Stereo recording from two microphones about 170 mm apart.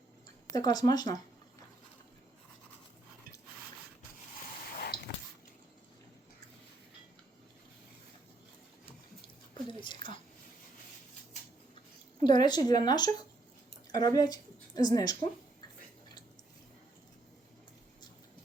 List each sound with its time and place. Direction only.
0.5 s speech: 25° left (ahead or behind)
9.6 s chewing: 30° left (ahead or behind)
12.2 s speech: 25° left (ahead or behind)